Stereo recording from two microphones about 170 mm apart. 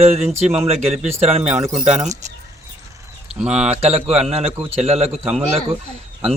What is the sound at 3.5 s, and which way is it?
Speech, 40° right (ahead or behind).